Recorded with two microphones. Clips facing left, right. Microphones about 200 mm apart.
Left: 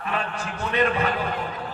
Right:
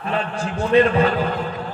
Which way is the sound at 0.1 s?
30° right (ahead or behind).